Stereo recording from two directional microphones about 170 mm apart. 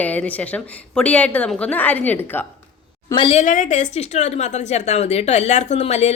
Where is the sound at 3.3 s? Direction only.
50° left (ahead or behind).